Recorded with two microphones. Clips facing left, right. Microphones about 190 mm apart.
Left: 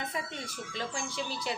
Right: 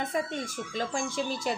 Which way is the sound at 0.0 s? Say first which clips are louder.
Right 7 dB; 45° right (ahead or behind).